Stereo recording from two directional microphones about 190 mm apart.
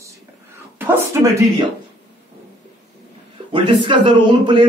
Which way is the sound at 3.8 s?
25° right (ahead or behind).